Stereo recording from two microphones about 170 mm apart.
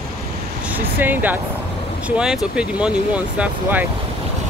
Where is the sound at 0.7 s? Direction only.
10° right (ahead or behind).